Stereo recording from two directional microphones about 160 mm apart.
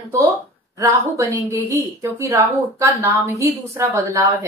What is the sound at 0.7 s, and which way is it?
A woman's voice, 20° right (ahead or behind).